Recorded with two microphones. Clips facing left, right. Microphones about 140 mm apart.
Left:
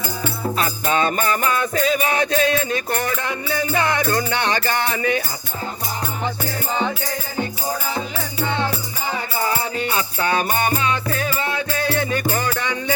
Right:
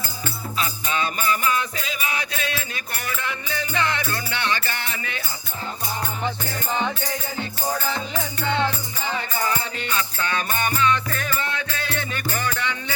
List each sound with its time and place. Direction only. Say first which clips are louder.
0.5 s music: left 5 dB; 45° left (ahead or behind)
9.4 s music: left 7 dB; 35° left (ahead or behind)